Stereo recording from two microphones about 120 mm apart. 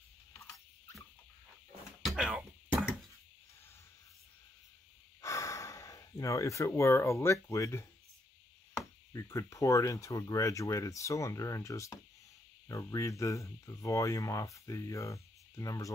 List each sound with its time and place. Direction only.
2.0 s throat clearing: centre (ahead or behind)
5.2 s speech: 25° left (ahead or behind)
9.1 s speech: 30° left (ahead or behind)